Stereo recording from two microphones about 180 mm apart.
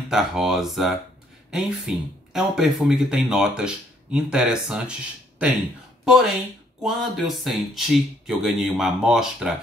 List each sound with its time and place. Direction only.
0.1 s speech: centre (ahead or behind)
6.0 s speech: centre (ahead or behind)